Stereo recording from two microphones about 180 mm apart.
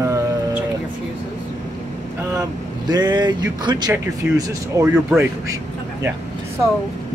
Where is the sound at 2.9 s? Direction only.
25° right (ahead or behind).